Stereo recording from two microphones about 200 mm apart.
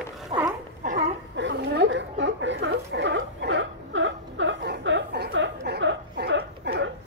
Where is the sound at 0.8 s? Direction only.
40° right (ahead or behind).